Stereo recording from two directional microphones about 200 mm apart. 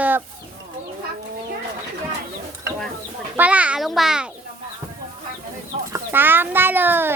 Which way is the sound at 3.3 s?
5° right (ahead or behind).